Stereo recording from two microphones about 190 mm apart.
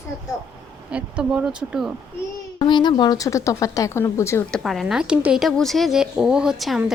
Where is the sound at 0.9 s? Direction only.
5° right (ahead or behind).